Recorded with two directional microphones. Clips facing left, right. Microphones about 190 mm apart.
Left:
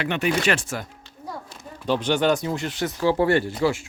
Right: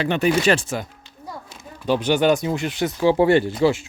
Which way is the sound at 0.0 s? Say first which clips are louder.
Right 4 dB; 35° right (ahead or behind).